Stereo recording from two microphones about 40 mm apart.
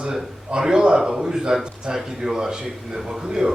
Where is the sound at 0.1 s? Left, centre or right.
Centre.